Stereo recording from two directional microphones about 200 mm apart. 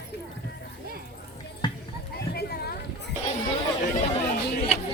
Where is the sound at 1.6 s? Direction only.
25° left (ahead or behind).